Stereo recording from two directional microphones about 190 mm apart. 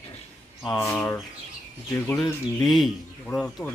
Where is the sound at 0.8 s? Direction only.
15° left (ahead or behind).